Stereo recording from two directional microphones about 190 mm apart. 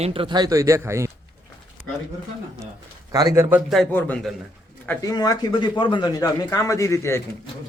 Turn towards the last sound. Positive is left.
turn(degrees=15)  # may be behind; listen again after turning